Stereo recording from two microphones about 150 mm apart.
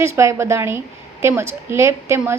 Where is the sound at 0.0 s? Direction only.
20° right (ahead or behind).